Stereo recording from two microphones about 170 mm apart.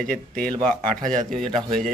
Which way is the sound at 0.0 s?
5° left (ahead or behind).